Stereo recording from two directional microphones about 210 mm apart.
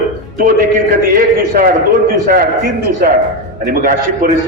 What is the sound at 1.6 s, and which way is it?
Speech, 45° right (ahead or behind).